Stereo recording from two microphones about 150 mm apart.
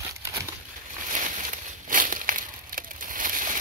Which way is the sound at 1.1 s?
60° right (ahead or behind).